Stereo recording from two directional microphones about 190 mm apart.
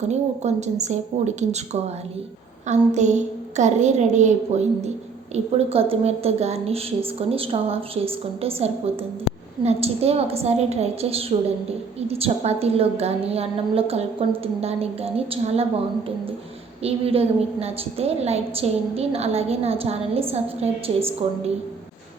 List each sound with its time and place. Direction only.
0.1 s a woman's voice: 35° right (ahead or behind)
16.8 s a woman's voice: 30° right (ahead or behind)